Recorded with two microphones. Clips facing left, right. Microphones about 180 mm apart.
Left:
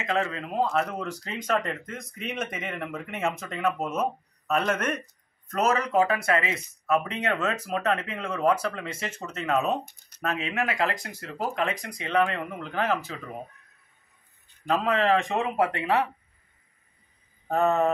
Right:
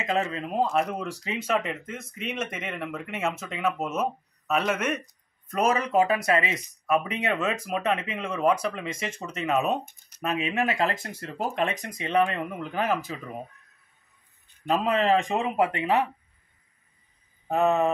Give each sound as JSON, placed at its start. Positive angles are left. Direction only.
{"t": 0.0, "sound": "speech", "side_deg": -20}
{"t": 14.7, "sound": "speech", "side_deg": -20}
{"t": 17.5, "sound": "speech", "side_deg": -10}